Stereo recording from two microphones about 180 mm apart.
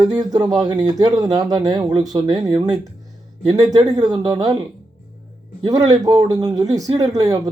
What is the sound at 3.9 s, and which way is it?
Speech, 20° right (ahead or behind).